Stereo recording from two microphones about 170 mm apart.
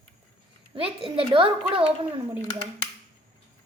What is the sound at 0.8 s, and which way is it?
Speech, 30° right (ahead or behind).